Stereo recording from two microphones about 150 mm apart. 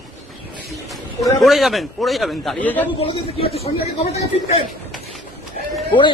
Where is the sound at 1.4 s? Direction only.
Centre (ahead or behind).